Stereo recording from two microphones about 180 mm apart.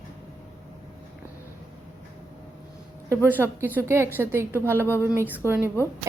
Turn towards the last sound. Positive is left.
turn(degrees=-10)  # may be behind; listen again after turning